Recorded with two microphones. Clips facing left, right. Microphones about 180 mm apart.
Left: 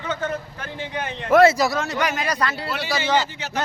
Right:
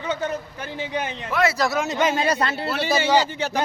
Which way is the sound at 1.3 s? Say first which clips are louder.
Left 8 dB; 45° left (ahead or behind).